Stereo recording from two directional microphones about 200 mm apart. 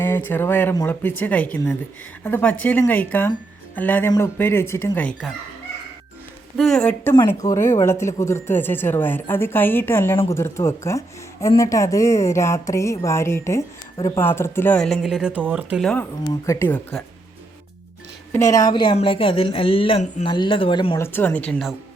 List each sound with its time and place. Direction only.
0.0 s a woman's voice: 10° left (ahead or behind)
6.6 s a woman's voice: 5° left (ahead or behind)
16.2 s a woman's voice: 15° left (ahead or behind)
18.3 s a woman's voice: 15° left (ahead or behind)
21.1 s a woman's voice: 10° left (ahead or behind)